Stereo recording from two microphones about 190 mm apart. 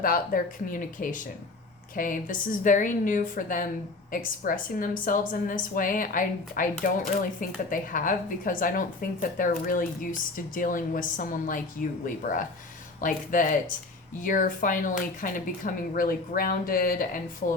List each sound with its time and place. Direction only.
0.0 s speech: 45° left (ahead or behind)